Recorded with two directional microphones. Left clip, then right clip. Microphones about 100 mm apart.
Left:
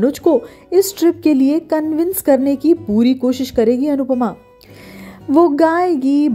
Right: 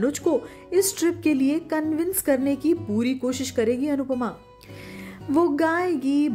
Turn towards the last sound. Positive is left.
turn(degrees=50)  # may be behind; listen again after turning